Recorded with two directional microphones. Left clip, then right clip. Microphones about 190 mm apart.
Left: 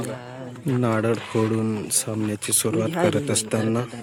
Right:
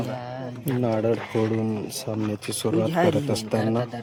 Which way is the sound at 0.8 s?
20° left (ahead or behind).